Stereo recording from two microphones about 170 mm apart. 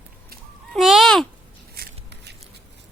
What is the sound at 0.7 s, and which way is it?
Babbling, centre (ahead or behind).